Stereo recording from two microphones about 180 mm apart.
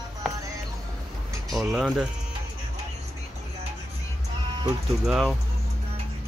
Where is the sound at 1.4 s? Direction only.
Centre (ahead or behind).